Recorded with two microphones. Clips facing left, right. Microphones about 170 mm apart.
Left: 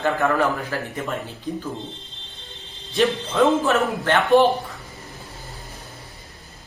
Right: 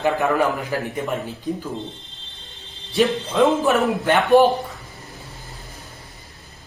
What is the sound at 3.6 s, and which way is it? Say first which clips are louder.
Speech: right 2 dB; 15° right (ahead or behind).